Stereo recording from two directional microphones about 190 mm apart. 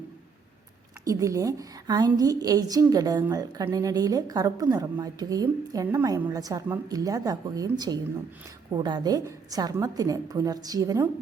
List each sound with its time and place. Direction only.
1.0 s a woman's voice: 15° right (ahead or behind)